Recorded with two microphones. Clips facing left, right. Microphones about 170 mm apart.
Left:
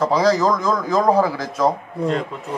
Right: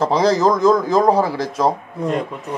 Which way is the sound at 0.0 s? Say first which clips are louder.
Right 1 dB; 25° right (ahead or behind).